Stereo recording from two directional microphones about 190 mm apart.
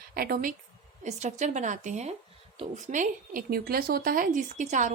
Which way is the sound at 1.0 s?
40° right (ahead or behind).